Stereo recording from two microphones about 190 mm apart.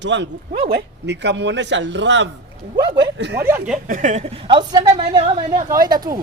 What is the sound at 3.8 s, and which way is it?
Speech, 40° right (ahead or behind).